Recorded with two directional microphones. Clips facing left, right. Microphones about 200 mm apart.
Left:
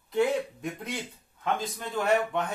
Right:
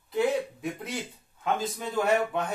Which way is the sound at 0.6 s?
5° right (ahead or behind).